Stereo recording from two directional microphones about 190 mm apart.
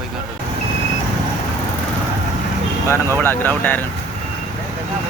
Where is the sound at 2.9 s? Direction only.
15° left (ahead or behind).